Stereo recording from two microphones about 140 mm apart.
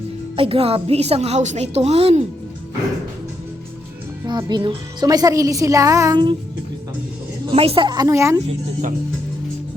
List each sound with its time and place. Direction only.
0.3 s a woman's voice: 40° right (ahead or behind)
4.3 s speech: 30° right (ahead or behind)
7.5 s a woman's voice: 45° right (ahead or behind)
7.9 s speech: 25° right (ahead or behind)